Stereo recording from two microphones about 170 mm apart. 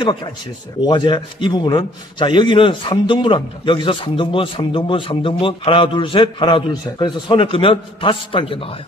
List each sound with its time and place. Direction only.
0.0 s a man's voice: 25° left (ahead or behind)